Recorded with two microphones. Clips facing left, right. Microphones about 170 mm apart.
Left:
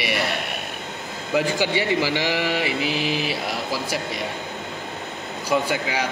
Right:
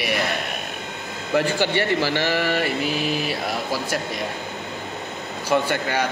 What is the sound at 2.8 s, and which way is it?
Mantra, 45° right (ahead or behind).